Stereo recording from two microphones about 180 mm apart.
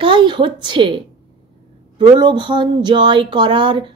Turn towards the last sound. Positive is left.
turn(degrees=-25)  # may be behind; listen again after turning